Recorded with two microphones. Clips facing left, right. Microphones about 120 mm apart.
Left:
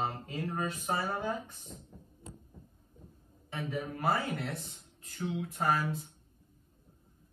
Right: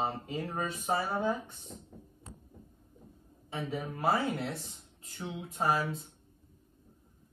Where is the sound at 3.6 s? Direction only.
30° right (ahead or behind).